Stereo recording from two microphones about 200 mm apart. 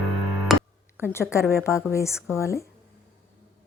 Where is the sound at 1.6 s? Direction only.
15° left (ahead or behind).